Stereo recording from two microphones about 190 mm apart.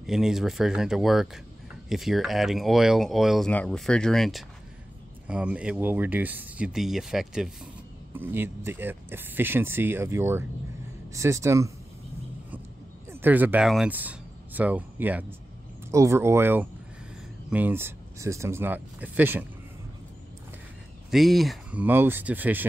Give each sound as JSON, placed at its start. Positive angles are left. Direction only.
{"t": 0.0, "sound": "speech", "side_deg": 0}
{"t": 13.1, "sound": "speech", "side_deg": -10}
{"t": 21.1, "sound": "speech", "side_deg": 0}